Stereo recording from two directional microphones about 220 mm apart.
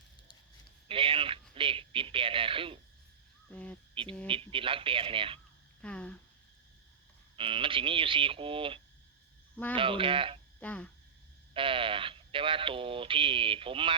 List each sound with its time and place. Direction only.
0.9 s a sound: 25° right (ahead or behind)
3.5 s speech: 5° left (ahead or behind)
4.0 s speech: 25° right (ahead or behind)
5.8 s speech: 5° left (ahead or behind)
7.3 s speech: 25° right (ahead or behind)
10.6 s frog: 5° left (ahead or behind)
11.5 s speech: 25° right (ahead or behind)